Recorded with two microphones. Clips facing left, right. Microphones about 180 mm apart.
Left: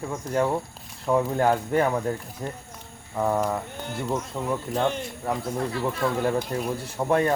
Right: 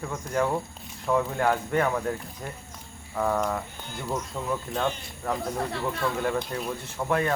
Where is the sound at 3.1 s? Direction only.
15° left (ahead or behind).